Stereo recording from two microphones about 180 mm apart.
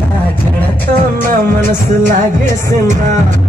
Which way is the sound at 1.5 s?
45° right (ahead or behind).